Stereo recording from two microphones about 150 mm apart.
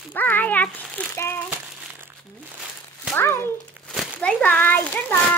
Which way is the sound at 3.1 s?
15° left (ahead or behind).